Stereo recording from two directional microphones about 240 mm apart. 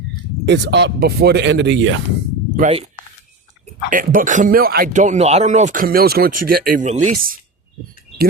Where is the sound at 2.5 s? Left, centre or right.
Right.